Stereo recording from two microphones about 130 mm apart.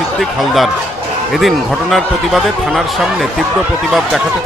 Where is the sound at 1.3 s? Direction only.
Centre (ahead or behind).